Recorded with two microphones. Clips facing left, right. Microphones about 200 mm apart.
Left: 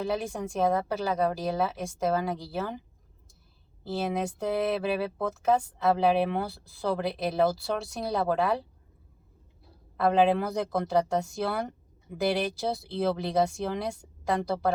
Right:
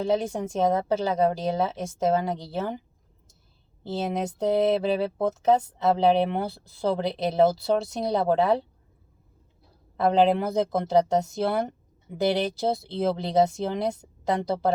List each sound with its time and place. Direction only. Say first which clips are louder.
0.0 s speech: right 5 dB; 25° right (ahead or behind)
3.8 s speech: right 1 dB; 20° right (ahead or behind)
10.0 s speech: right 2 dB; 20° right (ahead or behind)